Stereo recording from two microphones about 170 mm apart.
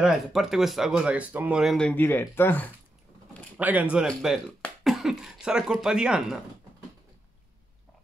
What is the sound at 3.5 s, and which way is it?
Speech, 10° right (ahead or behind).